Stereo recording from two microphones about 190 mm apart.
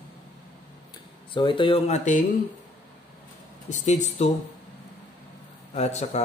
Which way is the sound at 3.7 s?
35° left (ahead or behind).